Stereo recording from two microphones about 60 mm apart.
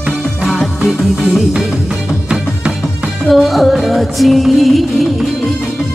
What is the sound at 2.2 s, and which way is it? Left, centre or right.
Music, centre.